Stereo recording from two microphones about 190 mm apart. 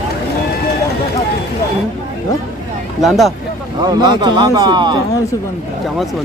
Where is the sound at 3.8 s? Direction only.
25° right (ahead or behind).